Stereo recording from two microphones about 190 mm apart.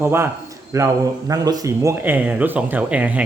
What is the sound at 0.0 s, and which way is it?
Speech, 10° right (ahead or behind).